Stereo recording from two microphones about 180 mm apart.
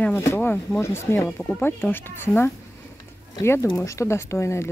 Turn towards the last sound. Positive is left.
turn(degrees=15)  # may be behind; listen again after turning